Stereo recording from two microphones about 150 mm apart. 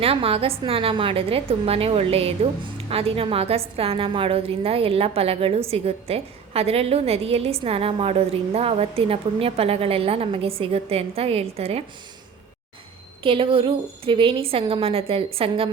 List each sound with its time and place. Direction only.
0.0 s a woman's voice: 40° right (ahead or behind)
13.2 s a woman's voice: 35° right (ahead or behind)